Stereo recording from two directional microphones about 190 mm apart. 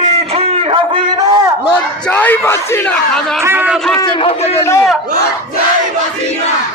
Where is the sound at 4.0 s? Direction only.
30° left (ahead or behind).